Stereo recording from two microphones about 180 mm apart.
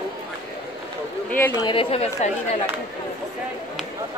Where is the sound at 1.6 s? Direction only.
30° left (ahead or behind).